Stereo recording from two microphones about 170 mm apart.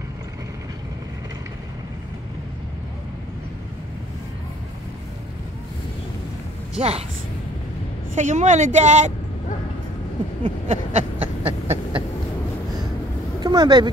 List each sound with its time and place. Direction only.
6.8 s a woman's voice: 40° right (ahead or behind)
8.1 s speech: 45° right (ahead or behind)
10.7 s a sound: 40° right (ahead or behind)
13.4 s vehicle: 25° right (ahead or behind)